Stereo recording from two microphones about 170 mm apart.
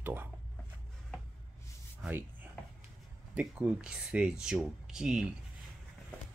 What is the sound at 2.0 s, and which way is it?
Speech, 10° right (ahead or behind).